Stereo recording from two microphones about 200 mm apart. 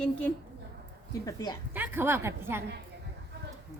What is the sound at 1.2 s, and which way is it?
Speech, 20° left (ahead or behind).